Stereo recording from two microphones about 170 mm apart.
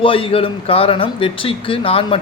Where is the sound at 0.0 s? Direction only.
30° left (ahead or behind).